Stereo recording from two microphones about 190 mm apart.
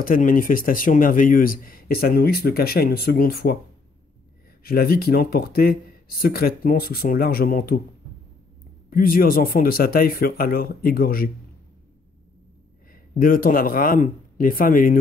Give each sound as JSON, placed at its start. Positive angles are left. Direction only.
{"t": 0.0, "sound": "speech", "side_deg": 45}
{"t": 4.6, "sound": "speech", "side_deg": 50}
{"t": 8.9, "sound": "speech", "side_deg": 50}
{"t": 12.9, "sound": "speech", "side_deg": 50}